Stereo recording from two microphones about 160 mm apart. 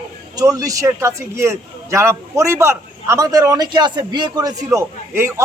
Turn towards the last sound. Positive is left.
turn(degrees=-15)  # may be behind; listen again after turning